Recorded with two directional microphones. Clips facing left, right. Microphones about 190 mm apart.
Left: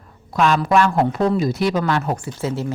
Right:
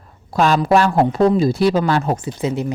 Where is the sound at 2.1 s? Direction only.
20° right (ahead or behind).